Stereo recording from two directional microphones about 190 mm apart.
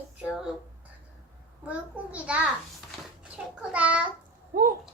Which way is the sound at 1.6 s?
5° right (ahead or behind).